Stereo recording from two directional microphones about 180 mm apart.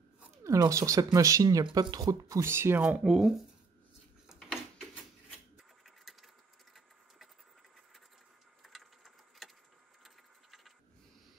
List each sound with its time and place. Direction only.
0.2 s speech: 15° right (ahead or behind)
4.3 s a sound: centre (ahead or behind)
5.9 s sewing machine: centre (ahead or behind)
8.6 s sewing machine: centre (ahead or behind)